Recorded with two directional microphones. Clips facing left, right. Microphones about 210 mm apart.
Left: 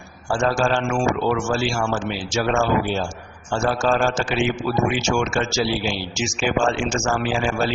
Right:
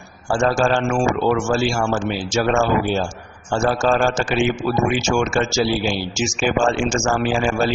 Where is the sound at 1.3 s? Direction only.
45° right (ahead or behind).